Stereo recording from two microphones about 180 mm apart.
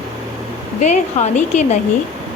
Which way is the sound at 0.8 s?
40° left (ahead or behind).